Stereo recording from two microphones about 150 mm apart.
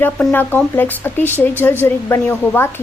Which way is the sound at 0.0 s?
10° left (ahead or behind).